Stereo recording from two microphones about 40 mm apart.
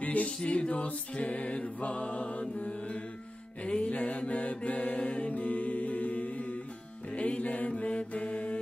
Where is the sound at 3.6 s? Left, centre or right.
Left.